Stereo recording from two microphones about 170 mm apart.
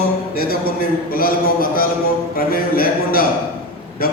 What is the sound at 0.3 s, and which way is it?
A man's voice, 60° left (ahead or behind).